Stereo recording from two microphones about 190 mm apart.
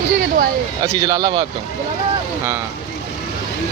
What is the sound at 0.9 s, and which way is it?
Speech, 20° right (ahead or behind).